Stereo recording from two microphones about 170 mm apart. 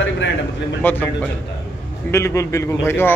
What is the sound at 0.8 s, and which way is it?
Speech, 10° left (ahead or behind).